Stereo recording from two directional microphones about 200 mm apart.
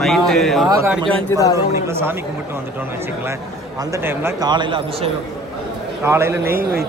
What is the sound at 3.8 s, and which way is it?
A man's voice, 15° right (ahead or behind).